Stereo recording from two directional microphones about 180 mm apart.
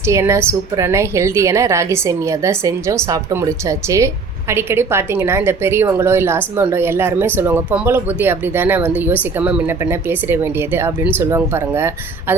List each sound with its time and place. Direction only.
0.1 s speech: 15° right (ahead or behind)